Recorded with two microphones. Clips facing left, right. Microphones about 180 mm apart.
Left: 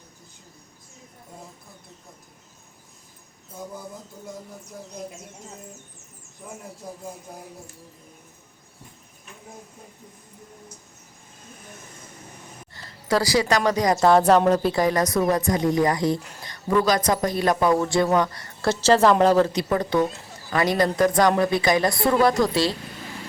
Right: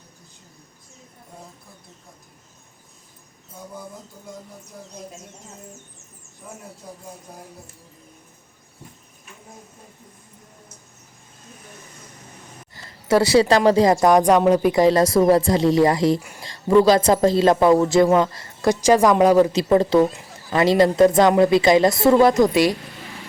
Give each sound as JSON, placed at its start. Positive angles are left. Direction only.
{"t": 12.7, "sound": "speech", "side_deg": -25}
{"t": 19.5, "sound": "speech", "side_deg": -25}